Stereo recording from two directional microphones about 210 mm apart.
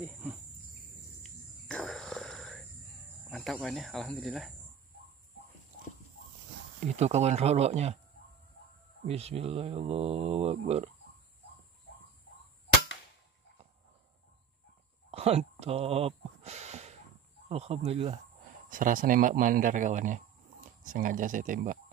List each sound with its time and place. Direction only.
0.0 s cricket: 10° right (ahead or behind)
1.2 s a sound: centre (ahead or behind)
3.3 s speech: centre (ahead or behind)
6.9 s speech: 30° right (ahead or behind)
9.0 s speech: 30° right (ahead or behind)
15.0 s a sound: 30° right (ahead or behind)
17.5 s speech: 30° right (ahead or behind)